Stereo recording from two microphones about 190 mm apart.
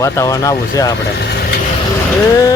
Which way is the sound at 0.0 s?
15° left (ahead or behind).